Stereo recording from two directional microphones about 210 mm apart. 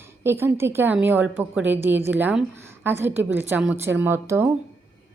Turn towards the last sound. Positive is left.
turn(degrees=-10)  # may be behind; listen again after turning